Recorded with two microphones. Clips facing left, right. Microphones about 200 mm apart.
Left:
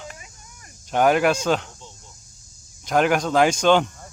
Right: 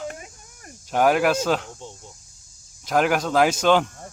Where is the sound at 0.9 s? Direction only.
5° right (ahead or behind).